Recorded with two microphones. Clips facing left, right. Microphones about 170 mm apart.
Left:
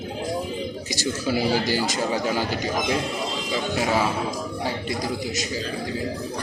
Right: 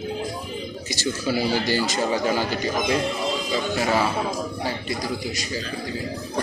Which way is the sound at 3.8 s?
10° left (ahead or behind).